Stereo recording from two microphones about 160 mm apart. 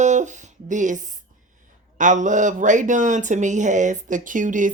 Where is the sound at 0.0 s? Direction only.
50° right (ahead or behind).